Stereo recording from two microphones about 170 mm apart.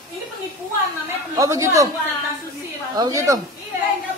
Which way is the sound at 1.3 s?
20° right (ahead or behind).